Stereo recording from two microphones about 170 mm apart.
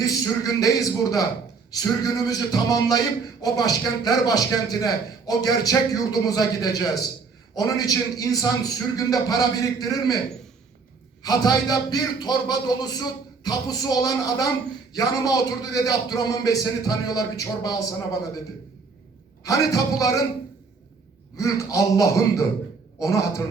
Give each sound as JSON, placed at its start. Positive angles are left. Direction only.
{"t": 0.0, "sound": "a man's voice", "side_deg": 20}
{"t": 11.2, "sound": "a man's voice", "side_deg": 20}
{"t": 19.5, "sound": "a man's voice", "side_deg": 20}
{"t": 21.3, "sound": "a man's voice", "side_deg": 20}